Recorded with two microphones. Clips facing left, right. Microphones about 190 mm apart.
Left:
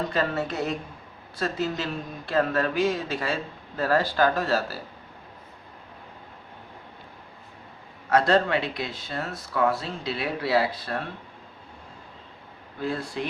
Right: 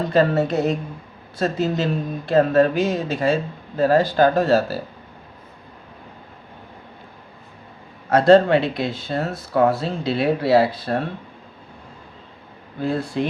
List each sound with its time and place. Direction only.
0.1 s speech: 30° right (ahead or behind)
8.1 s speech: 30° right (ahead or behind)
12.8 s speech: 25° right (ahead or behind)